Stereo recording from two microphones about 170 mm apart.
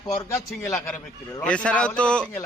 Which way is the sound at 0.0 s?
20° left (ahead or behind).